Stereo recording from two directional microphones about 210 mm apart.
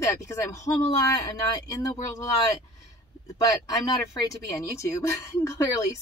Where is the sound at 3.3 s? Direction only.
15° left (ahead or behind).